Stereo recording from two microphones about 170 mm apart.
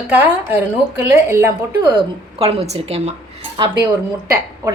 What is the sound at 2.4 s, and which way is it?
Speech, 35° right (ahead or behind).